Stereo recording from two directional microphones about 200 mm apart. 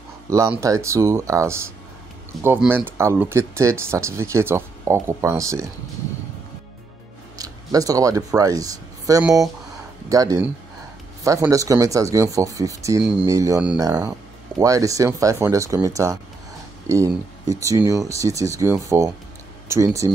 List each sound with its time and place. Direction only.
0.3 s speech: 15° right (ahead or behind)
7.3 s a sound: 20° right (ahead or behind)
8.4 s speech: 15° right (ahead or behind)
14.6 s speech: 15° right (ahead or behind)